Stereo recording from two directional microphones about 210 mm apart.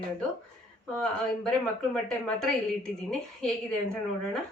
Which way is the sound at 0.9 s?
5° left (ahead or behind).